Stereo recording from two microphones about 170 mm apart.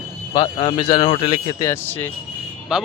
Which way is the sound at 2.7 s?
5° right (ahead or behind).